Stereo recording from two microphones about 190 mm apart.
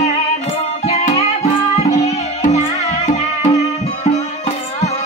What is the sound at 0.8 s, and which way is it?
Music, 35° left (ahead or behind).